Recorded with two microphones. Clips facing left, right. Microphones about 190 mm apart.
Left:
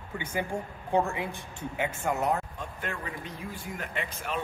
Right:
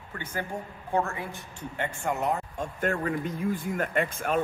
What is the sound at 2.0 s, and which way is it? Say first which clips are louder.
Speech: even; centre (ahead or behind).